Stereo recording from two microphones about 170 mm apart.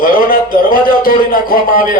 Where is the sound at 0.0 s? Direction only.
55° left (ahead or behind).